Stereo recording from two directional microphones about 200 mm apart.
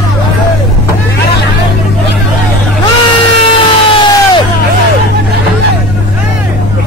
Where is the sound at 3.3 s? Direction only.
25° left (ahead or behind).